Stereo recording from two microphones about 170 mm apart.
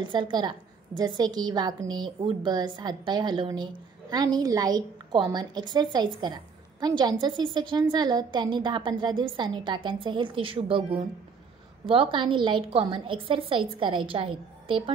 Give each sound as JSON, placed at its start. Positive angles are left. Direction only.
{"t": 0.0, "sound": "a woman's voice", "side_deg": -25}